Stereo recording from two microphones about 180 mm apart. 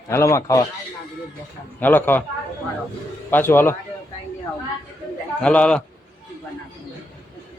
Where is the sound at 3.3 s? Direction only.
10° left (ahead or behind).